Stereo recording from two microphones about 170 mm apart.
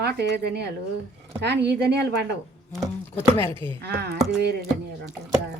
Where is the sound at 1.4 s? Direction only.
85° right.